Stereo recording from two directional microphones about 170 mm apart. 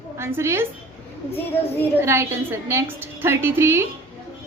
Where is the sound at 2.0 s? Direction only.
15° right (ahead or behind).